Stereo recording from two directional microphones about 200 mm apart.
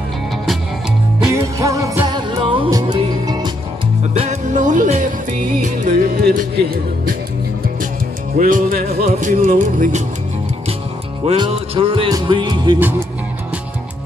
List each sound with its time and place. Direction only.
1.2 s music: 15° right (ahead or behind)
4.2 s music: 35° right (ahead or behind)
8.4 s music: 45° right (ahead or behind)
11.2 s music: 25° right (ahead or behind)